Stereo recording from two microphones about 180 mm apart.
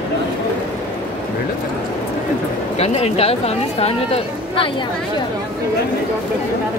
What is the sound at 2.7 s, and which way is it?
Speech, 35° left (ahead or behind).